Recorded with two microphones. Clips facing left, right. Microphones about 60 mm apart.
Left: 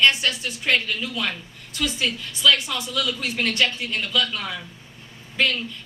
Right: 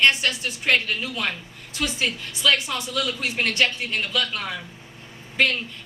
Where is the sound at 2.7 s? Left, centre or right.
Right.